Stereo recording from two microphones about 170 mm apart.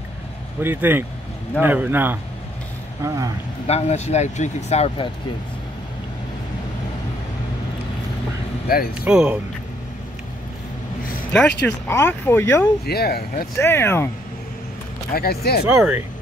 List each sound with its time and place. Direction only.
0.6 s a man's voice: 10° right (ahead or behind)
3.6 s speech: 40° left (ahead or behind)
8.6 s speech: 60° left (ahead or behind)
9.0 s a man's voice: 5° right (ahead or behind)
11.3 s speech: 10° left (ahead or behind)
12.8 s speech: 65° left (ahead or behind)
13.6 s speech: 15° left (ahead or behind)
15.1 s speech: 65° left (ahead or behind)
15.7 s speech: 5° right (ahead or behind)